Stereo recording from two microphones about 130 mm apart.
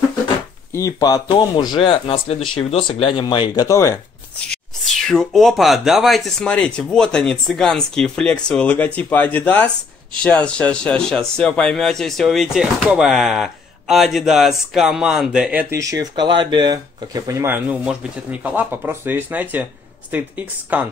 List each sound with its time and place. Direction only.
0.7 s speech: 25° left (ahead or behind)
4.4 s speech: 5° left (ahead or behind)
15.7 s speech: 25° right (ahead or behind)